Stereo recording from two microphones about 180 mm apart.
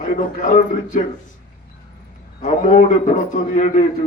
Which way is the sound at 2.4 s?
45° left (ahead or behind).